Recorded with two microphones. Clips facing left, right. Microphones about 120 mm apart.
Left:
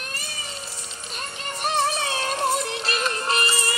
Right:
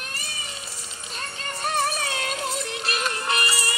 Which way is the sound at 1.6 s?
20° left (ahead or behind).